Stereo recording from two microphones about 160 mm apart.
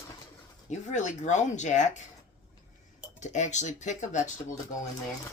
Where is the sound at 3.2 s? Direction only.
50° left (ahead or behind).